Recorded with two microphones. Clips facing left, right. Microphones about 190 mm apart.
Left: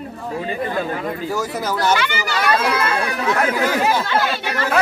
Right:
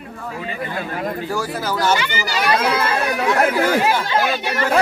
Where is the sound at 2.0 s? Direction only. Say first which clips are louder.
Left 1 dB; 10° right (ahead or behind).